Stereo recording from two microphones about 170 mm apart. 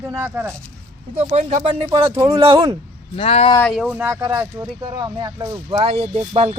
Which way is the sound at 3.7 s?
5° right (ahead or behind).